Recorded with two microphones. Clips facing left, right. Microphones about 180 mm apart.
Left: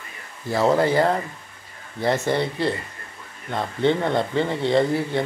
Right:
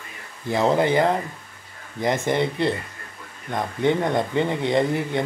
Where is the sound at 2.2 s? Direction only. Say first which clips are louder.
Right 1 dB; 20° right (ahead or behind).